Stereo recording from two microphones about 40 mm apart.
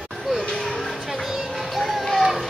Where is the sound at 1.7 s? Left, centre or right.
Centre.